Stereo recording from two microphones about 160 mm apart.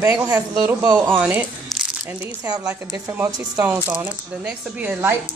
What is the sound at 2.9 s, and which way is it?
Speech, 15° right (ahead or behind).